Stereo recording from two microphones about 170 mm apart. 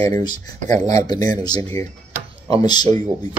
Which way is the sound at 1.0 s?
25° left (ahead or behind).